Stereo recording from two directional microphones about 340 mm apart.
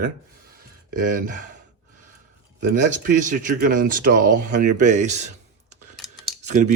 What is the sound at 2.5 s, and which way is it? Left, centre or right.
Speech, right.